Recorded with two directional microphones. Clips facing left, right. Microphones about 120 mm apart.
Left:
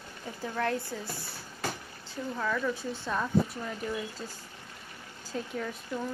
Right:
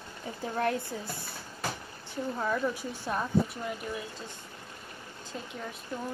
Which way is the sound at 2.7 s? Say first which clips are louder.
Left 1 dB; 15° right (ahead or behind).